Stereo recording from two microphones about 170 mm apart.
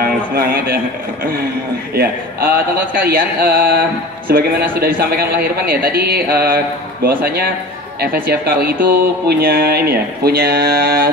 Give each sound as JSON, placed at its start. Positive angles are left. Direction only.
{"t": 0.3, "sound": "a man's voice", "side_deg": -60}
{"t": 2.0, "sound": "a man's voice", "side_deg": -60}